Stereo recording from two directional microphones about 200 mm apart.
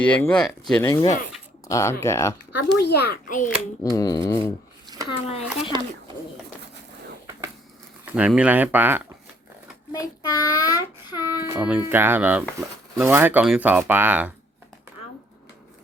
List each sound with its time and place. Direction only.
0.0 s speech: 5° left (ahead or behind)
0.9 s speech: 20° left (ahead or behind)
2.7 s a child's voice: 55° left (ahead or behind)
3.9 s speech: 15° left (ahead or behind)
5.7 s speech: 20° right (ahead or behind)
8.0 s speech: 5° right (ahead or behind)
9.9 s a child's voice: 15° left (ahead or behind)
11.4 s speech: 10° right (ahead or behind)